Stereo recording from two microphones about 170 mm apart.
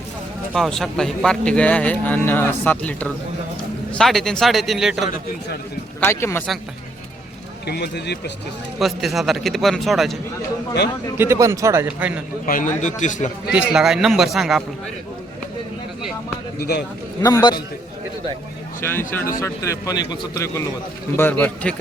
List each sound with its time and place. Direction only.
0.5 s speech: centre (ahead or behind)
6.0 s speech: 15° left (ahead or behind)
7.7 s speech: 75° left (ahead or behind)
8.8 s speech: centre (ahead or behind)
11.2 s a man's voice: 15° right (ahead or behind)
12.8 s a man's voice: 45° left (ahead or behind)
13.5 s speech: 5° right (ahead or behind)
16.6 s speech: 70° left (ahead or behind)
17.2 s speech: 20° left (ahead or behind)
18.8 s speech: 15° left (ahead or behind)